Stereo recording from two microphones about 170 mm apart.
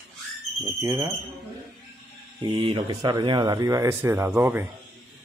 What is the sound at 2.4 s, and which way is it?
Speech, 30° right (ahead or behind).